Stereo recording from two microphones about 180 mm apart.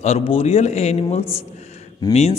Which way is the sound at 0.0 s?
35° left (ahead or behind).